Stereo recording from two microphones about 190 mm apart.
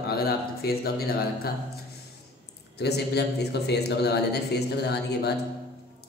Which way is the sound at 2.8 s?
60° left (ahead or behind).